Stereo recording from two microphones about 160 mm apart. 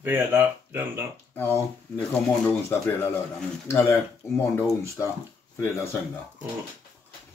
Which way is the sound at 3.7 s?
15° left (ahead or behind).